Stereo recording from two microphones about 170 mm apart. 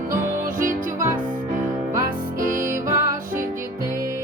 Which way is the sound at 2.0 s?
55° right (ahead or behind).